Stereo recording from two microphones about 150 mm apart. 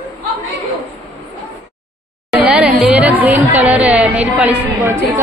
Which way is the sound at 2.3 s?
5° right (ahead or behind).